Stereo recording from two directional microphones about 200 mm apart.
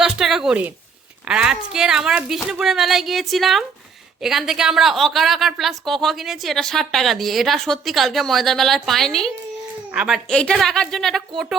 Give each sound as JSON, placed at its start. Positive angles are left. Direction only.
{"t": 0.0, "sound": "a woman's voice", "side_deg": 0}